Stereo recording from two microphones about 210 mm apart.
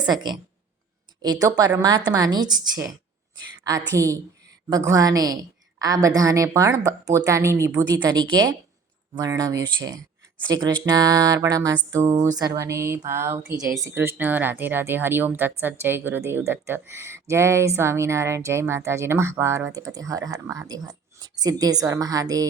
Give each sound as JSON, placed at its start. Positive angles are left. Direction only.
{"t": 0.0, "sound": "speech", "side_deg": -20}